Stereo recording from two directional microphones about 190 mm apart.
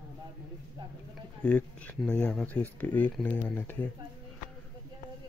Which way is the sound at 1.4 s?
5° left (ahead or behind).